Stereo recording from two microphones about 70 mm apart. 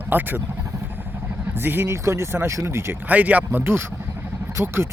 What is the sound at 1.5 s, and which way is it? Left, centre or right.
Speech, right.